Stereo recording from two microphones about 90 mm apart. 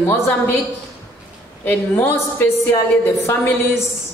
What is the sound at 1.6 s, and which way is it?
A woman's voice, 20° left (ahead or behind).